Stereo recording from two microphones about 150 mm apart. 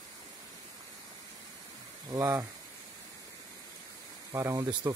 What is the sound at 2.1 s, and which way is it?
Speech, 20° right (ahead or behind).